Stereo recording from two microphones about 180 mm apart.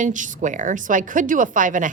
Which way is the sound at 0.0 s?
45° right (ahead or behind).